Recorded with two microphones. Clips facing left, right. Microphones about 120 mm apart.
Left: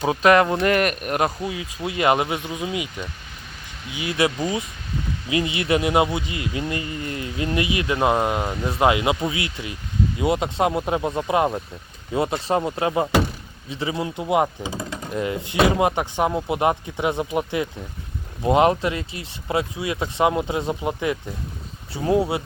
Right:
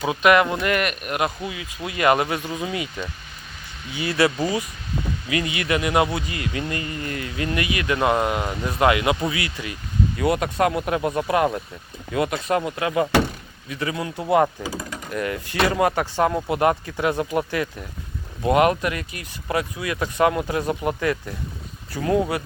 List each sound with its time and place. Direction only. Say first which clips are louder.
0.0 s speech: left 1 dB; 30° left (ahead or behind); by 4.3 s 15° left (ahead or behind)
5.3 s speech: left 3 dB; 25° left (ahead or behind)